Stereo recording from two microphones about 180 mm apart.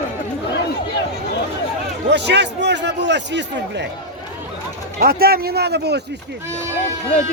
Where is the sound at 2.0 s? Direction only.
75° right (ahead or behind).